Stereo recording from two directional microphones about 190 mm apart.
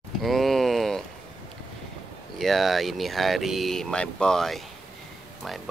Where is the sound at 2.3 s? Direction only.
Centre (ahead or behind).